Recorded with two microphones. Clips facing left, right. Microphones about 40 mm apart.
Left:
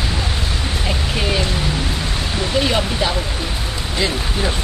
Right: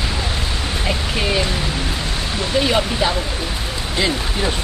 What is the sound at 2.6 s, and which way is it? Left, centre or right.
Speech, centre.